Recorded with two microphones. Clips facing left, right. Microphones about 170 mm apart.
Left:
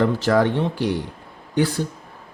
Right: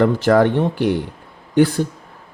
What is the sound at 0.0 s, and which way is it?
Speech, 55° right (ahead or behind).